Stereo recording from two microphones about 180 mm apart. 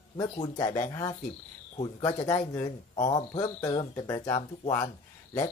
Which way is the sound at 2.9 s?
35° left (ahead or behind).